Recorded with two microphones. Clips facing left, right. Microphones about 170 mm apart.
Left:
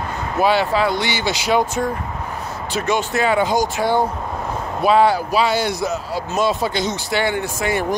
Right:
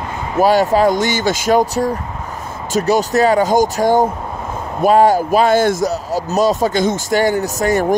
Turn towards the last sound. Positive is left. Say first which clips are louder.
# right 5 dB
turn(degrees=-40)  # may be behind; listen again after turning